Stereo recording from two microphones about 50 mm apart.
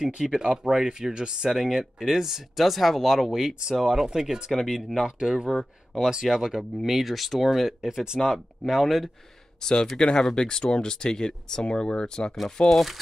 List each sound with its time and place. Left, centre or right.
0.0 s speech: centre
4.5 s speech: centre
5.0 s speech: centre
9.6 s speech: centre
12.6 s speech: centre